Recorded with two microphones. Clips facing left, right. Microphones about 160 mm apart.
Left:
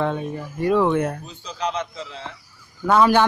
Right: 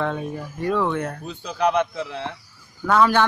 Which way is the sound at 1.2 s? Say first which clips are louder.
Right 6 dB; 60° right (ahead or behind).